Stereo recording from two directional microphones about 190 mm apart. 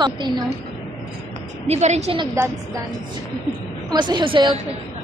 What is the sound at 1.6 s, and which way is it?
Speech, 35° right (ahead or behind).